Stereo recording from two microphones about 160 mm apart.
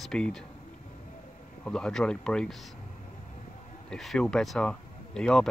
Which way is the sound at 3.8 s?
5° left (ahead or behind).